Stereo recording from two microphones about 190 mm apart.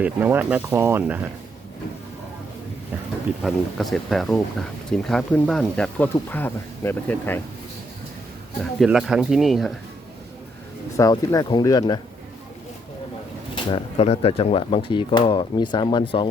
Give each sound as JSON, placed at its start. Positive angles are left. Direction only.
{"t": 0.0, "sound": "speech", "side_deg": -10}
{"t": 3.4, "sound": "speech", "side_deg": 0}
{"t": 8.8, "sound": "speech", "side_deg": -5}
{"t": 10.9, "sound": "speech", "side_deg": 15}
{"t": 13.7, "sound": "speech", "side_deg": 30}